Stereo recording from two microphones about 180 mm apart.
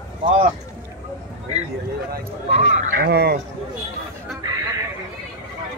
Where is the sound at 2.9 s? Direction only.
65° right (ahead or behind).